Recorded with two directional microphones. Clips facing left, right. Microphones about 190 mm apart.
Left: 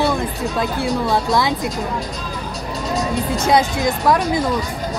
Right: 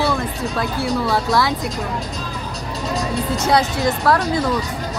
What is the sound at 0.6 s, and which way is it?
Speech, 20° left (ahead or behind).